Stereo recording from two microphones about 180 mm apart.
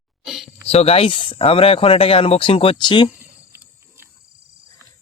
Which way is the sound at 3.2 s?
15° right (ahead or behind).